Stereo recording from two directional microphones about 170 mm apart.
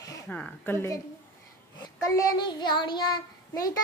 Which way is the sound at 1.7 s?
20° left (ahead or behind).